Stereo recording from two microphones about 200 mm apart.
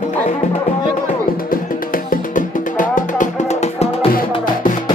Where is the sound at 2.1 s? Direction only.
40° left (ahead or behind).